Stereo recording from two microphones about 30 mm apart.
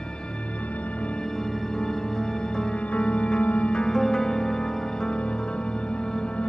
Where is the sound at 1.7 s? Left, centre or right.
Left.